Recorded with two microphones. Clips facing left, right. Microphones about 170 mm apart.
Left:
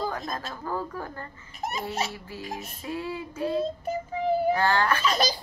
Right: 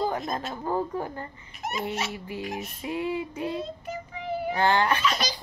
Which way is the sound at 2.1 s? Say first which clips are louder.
Right 4 dB; 15° right (ahead or behind).